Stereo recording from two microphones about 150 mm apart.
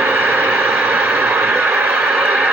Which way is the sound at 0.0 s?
10° right (ahead or behind).